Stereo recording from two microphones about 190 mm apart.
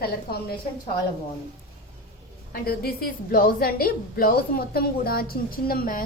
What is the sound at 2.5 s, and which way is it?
A woman's voice, 50° left (ahead or behind).